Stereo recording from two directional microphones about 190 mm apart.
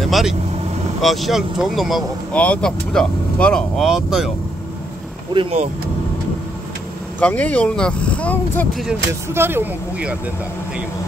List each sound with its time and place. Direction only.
0.0 s vehicle: centre (ahead or behind)
1.0 s speech: centre (ahead or behind)
5.3 s speech: 25° right (ahead or behind)
7.2 s speech: 10° left (ahead or behind)
9.3 s speech: 10° right (ahead or behind)